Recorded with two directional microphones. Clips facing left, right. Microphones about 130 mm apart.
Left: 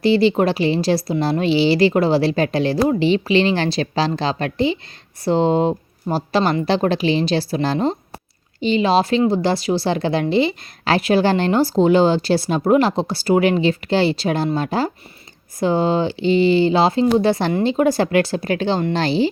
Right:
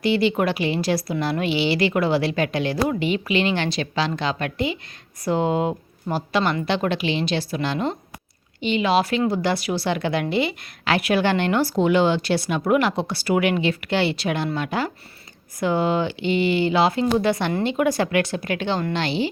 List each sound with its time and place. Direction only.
0.0 s speech: 30° left (ahead or behind)